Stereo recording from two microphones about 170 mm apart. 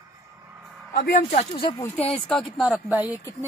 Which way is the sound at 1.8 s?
15° left (ahead or behind).